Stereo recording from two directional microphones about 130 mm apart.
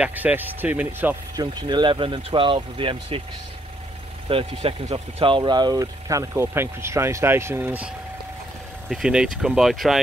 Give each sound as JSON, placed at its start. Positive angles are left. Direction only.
{"t": 0.0, "sound": "speech", "side_deg": -15}
{"t": 1.3, "sound": "speech", "side_deg": -35}
{"t": 4.3, "sound": "speech", "side_deg": -45}